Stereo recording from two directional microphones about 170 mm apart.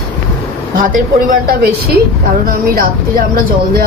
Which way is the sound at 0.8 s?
50° right (ahead or behind).